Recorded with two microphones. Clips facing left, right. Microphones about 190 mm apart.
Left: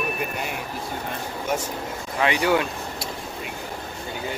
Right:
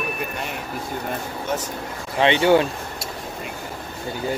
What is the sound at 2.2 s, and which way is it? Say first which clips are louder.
Speech: right 5 dB; 25° right (ahead or behind).